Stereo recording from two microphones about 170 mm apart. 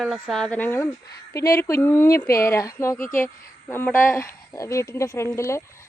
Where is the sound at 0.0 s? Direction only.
Centre (ahead or behind).